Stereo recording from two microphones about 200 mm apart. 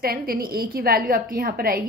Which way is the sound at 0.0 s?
45° right (ahead or behind).